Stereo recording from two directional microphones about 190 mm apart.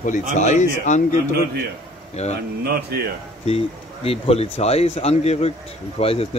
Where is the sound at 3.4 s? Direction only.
30° left (ahead or behind).